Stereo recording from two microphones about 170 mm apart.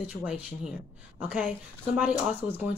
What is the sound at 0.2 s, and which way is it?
Speech, 5° right (ahead or behind).